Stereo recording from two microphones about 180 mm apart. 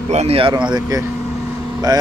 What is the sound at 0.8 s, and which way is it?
Speech, 20° right (ahead or behind).